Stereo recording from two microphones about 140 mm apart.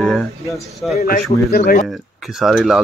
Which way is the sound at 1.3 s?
50° left (ahead or behind).